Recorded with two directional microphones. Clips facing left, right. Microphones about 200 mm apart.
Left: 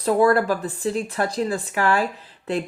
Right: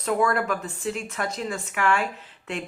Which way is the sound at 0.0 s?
35° left (ahead or behind).